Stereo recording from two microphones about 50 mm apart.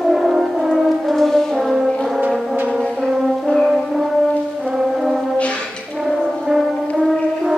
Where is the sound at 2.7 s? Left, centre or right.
Centre.